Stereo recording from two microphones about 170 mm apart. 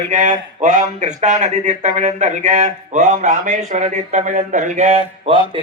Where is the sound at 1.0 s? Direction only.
45° right (ahead or behind).